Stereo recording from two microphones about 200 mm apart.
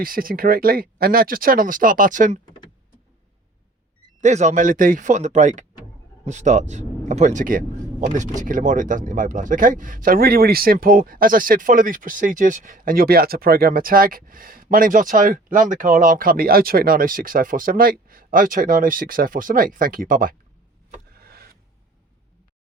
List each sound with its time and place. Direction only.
0.0 s speech: 45° right (ahead or behind)
4.2 s speech: 35° right (ahead or behind)
21.2 s a sound: 50° right (ahead or behind)